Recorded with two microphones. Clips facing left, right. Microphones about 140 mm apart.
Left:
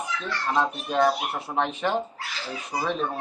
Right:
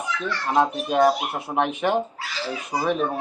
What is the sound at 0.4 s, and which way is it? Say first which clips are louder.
Speech: right 4 dB; 15° right (ahead or behind).